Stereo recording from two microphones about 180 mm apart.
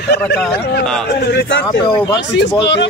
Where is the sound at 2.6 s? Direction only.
70° left (ahead or behind).